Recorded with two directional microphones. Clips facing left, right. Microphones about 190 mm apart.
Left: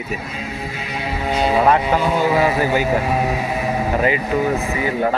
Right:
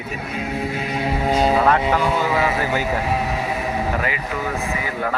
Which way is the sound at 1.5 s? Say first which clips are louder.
Left 2 dB; 15° left (ahead or behind).